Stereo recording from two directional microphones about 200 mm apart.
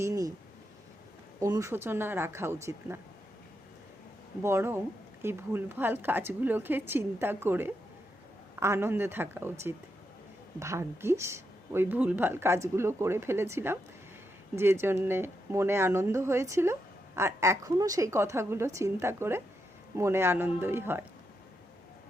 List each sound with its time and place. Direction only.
0.0 s a sound: 15° right (ahead or behind)
1.4 s a woman's voice: 15° right (ahead or behind)
4.4 s a woman's voice: 10° right (ahead or behind)